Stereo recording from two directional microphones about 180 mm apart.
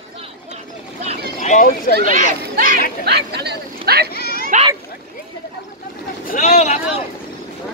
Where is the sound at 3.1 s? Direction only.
65° right (ahead or behind).